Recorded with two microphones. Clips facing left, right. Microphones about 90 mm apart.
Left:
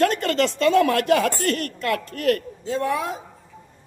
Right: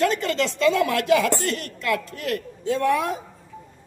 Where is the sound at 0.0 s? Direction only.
55° left (ahead or behind).